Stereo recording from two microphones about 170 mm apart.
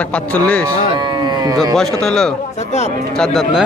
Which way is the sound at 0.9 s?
25° right (ahead or behind).